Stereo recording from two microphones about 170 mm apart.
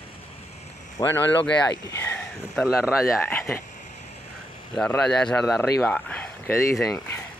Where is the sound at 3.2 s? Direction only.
15° left (ahead or behind).